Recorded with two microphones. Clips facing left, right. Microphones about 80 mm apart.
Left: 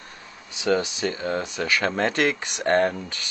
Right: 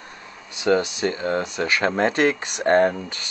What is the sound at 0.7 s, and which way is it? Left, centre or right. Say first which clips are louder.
Speech: right 3 dB; right.